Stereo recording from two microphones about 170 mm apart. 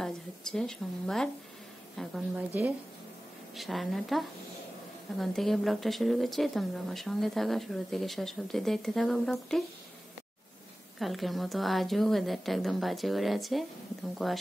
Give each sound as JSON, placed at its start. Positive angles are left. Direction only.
{"t": 0.0, "sound": "speech", "side_deg": 5}
{"t": 2.3, "sound": "speech", "side_deg": -15}
{"t": 3.5, "sound": "speech", "side_deg": 0}
{"t": 11.0, "sound": "speech", "side_deg": 0}